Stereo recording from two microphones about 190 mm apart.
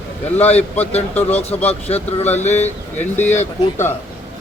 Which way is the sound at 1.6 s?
35° left (ahead or behind).